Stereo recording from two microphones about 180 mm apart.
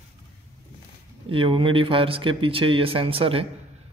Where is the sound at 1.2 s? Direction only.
30° right (ahead or behind).